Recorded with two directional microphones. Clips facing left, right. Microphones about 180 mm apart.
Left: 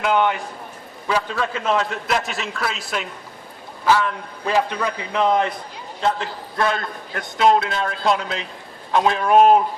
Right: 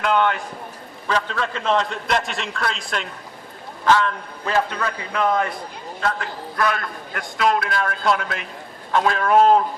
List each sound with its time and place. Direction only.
0.0 s a man's voice: 15° left (ahead or behind)